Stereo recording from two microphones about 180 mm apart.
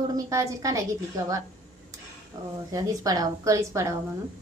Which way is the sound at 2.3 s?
20° right (ahead or behind).